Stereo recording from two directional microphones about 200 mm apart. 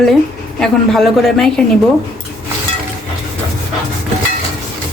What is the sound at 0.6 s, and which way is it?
A man's voice, centre (ahead or behind).